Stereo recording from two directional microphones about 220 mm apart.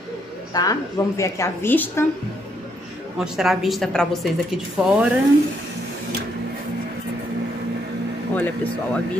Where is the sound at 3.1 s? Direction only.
Centre (ahead or behind).